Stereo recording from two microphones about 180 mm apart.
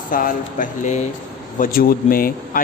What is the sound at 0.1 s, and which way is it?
A man's voice, 50° left (ahead or behind).